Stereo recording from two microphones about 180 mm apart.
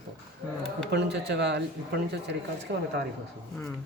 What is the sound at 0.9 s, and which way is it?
Speech, 70° right (ahead or behind).